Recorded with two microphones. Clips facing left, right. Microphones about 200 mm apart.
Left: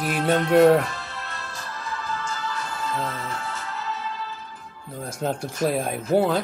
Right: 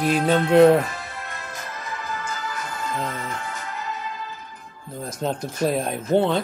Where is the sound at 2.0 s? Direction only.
20° right (ahead or behind).